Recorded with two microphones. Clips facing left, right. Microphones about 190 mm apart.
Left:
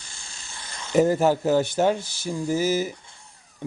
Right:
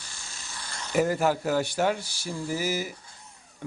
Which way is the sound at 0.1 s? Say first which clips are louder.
Even; 25° left (ahead or behind).